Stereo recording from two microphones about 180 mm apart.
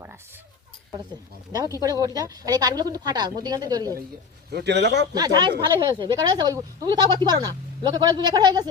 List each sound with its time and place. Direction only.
1.5 s a woman's voice: 20° right (ahead or behind)
4.5 s a man's voice: 70° right (ahead or behind)
5.1 s a woman's voice: 20° right (ahead or behind)